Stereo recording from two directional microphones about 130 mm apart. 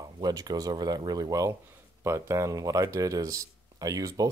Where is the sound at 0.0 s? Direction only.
30° right (ahead or behind).